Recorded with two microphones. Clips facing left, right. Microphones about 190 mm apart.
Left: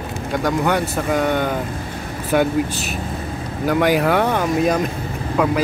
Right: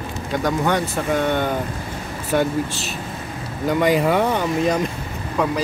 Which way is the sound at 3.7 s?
5° left (ahead or behind).